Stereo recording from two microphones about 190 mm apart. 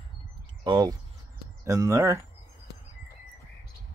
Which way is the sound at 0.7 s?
20° right (ahead or behind).